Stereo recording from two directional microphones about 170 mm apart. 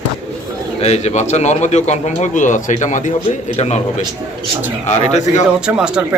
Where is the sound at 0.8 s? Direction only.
40° left (ahead or behind).